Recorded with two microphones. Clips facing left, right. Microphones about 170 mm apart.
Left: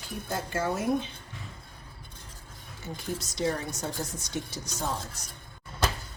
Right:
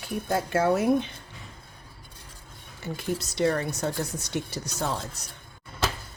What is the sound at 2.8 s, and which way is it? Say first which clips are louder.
A woman's voice: right 5 dB; 65° right (ahead or behind).